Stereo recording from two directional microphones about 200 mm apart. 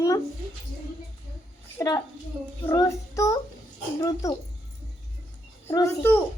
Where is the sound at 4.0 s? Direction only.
15° left (ahead or behind).